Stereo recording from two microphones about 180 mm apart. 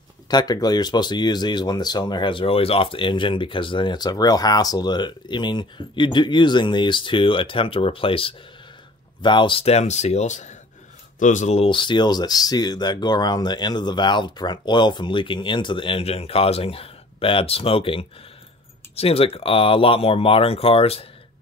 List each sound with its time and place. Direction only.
0.3 s speech: 20° left (ahead or behind)